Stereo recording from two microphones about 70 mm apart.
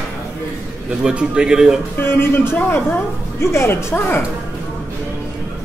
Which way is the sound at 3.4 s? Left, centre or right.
Left.